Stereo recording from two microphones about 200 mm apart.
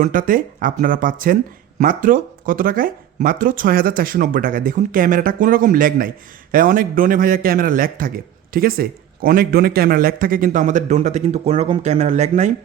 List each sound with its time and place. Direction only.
0.0 s a man's voice: 45° right (ahead or behind)